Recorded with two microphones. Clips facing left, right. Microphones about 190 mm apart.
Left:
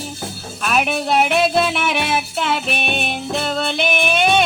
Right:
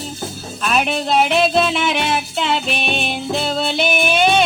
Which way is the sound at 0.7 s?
5° left (ahead or behind).